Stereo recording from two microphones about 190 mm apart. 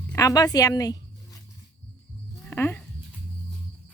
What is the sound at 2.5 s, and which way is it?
Speech, 10° left (ahead or behind).